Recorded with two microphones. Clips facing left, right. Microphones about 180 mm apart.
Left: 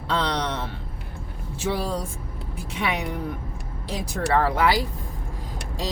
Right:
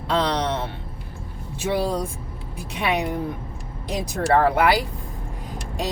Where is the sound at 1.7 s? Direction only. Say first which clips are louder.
Right 5 dB; 15° right (ahead or behind).